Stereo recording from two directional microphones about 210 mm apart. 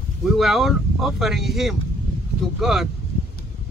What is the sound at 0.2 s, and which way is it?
Speech, centre (ahead or behind).